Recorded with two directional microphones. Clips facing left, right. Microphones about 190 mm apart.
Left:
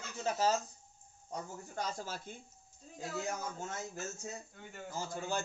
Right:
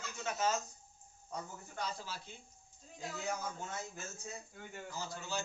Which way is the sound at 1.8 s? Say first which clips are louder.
Left 3 dB; 45° left (ahead or behind).